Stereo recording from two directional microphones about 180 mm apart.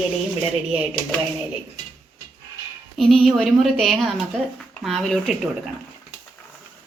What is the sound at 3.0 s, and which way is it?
A woman's voice, centre (ahead or behind).